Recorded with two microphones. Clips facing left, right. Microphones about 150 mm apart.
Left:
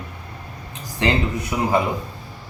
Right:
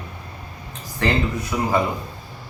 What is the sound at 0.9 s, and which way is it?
Speech, 20° left (ahead or behind).